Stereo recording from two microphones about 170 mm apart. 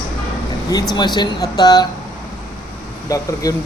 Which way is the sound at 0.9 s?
25° left (ahead or behind).